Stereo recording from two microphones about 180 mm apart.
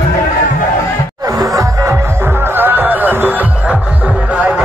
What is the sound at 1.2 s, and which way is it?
Music, 20° right (ahead or behind).